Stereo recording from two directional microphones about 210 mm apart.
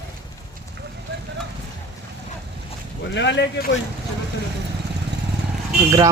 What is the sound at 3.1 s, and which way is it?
Speech, 55° left (ahead or behind).